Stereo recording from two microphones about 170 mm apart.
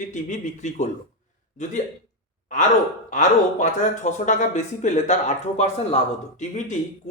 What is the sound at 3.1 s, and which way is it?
A man's voice, 45° left (ahead or behind).